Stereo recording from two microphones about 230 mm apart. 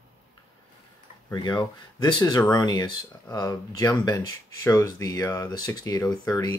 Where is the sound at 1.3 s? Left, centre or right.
Centre.